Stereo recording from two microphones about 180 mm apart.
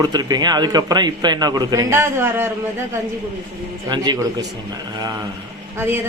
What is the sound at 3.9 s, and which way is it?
Speech, 25° right (ahead or behind).